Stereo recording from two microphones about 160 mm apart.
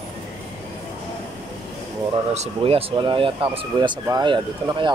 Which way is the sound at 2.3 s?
40° right (ahead or behind).